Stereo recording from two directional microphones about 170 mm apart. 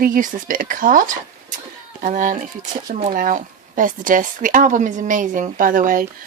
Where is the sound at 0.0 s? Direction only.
55° right (ahead or behind).